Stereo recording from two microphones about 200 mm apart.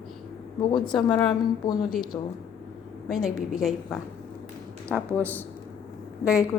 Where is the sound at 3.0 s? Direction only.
Centre (ahead or behind).